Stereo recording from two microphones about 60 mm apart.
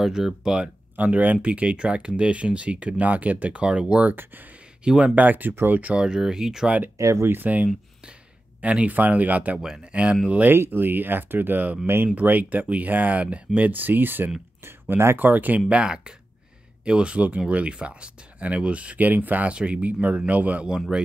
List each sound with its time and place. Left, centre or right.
0.0 s speech: centre
0.9 s speech: right
4.1 s speech: right
4.8 s speech: centre
5.9 s speech: centre
7.0 s speech: right
7.2 s speech: right
10.5 s speech: right
15.1 s speech: right
15.7 s speech: centre